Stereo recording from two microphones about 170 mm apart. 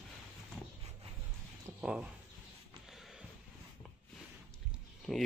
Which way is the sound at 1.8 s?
5° right (ahead or behind).